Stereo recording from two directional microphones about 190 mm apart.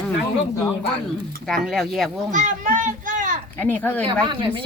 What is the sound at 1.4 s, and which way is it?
Speech, centre (ahead or behind).